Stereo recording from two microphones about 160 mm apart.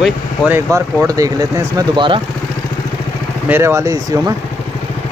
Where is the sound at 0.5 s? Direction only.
15° right (ahead or behind).